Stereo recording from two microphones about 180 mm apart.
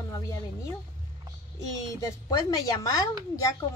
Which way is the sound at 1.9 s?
20° left (ahead or behind).